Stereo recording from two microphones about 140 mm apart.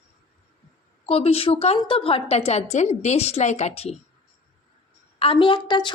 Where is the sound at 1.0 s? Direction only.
45° left (ahead or behind).